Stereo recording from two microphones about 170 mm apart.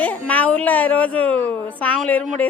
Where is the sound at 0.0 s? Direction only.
10° left (ahead or behind).